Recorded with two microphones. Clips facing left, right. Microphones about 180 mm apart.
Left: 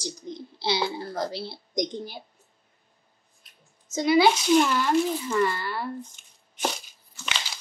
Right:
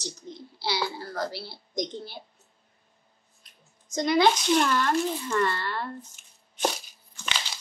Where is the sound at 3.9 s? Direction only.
5° left (ahead or behind).